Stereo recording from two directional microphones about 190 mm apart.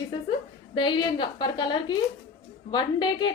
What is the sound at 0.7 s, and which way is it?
A woman's voice, 25° left (ahead or behind).